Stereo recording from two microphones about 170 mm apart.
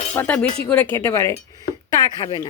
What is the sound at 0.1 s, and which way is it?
Speech, 10° left (ahead or behind).